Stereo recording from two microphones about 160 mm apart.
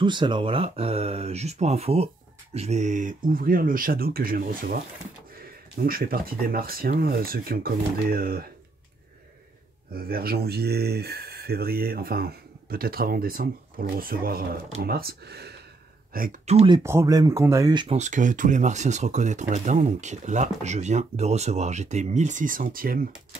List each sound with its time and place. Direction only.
0.0 s speech: 30° right (ahead or behind); by 8.5 s 65° right (ahead or behind)
9.9 s speech: 70° right (ahead or behind); by 15.5 s 90° right
16.1 s speech: 65° right (ahead or behind)
16.4 s speech: 35° right (ahead or behind)
16.8 s speech: 20° right (ahead or behind)
17.7 s speech: 40° right (ahead or behind); by 23.0 s 65° right (ahead or behind)